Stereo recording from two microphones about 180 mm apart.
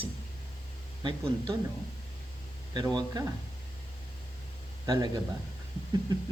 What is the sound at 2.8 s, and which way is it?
Speech, 20° right (ahead or behind).